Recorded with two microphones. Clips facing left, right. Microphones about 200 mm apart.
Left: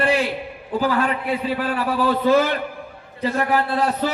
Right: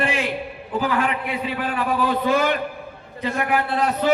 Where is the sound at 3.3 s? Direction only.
35° left (ahead or behind).